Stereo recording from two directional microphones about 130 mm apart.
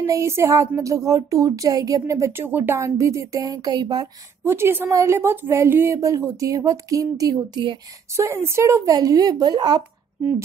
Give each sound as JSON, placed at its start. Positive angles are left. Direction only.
{"t": 0.0, "sound": "speech", "side_deg": -25}
{"t": 4.5, "sound": "speech", "side_deg": -20}
{"t": 8.2, "sound": "speech", "side_deg": -20}